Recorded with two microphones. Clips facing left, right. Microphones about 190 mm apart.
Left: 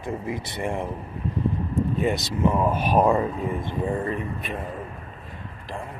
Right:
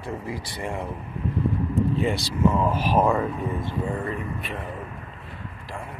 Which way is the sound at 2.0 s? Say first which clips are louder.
Even; 20° left (ahead or behind).